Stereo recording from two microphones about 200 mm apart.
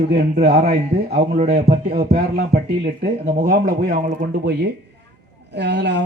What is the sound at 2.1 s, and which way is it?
Speech, 50° right (ahead or behind).